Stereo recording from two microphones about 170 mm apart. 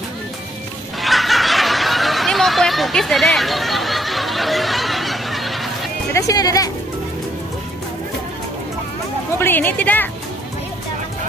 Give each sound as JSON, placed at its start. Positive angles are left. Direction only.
{"t": 1.0, "sound": "a sound", "side_deg": 0}
{"t": 6.1, "sound": "speech", "side_deg": 20}
{"t": 9.4, "sound": "a woman's voice", "side_deg": 10}